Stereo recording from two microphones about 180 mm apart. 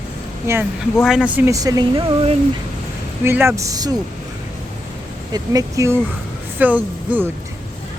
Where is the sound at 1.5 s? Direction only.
20° right (ahead or behind).